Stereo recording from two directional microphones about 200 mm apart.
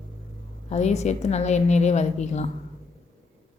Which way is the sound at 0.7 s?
35° left (ahead or behind).